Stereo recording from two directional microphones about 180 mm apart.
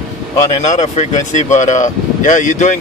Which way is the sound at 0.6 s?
40° left (ahead or behind).